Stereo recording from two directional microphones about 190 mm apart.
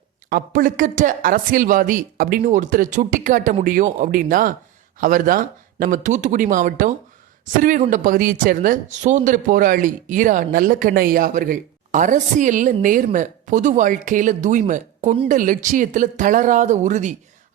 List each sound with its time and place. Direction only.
0.3 s speech: 45° right (ahead or behind)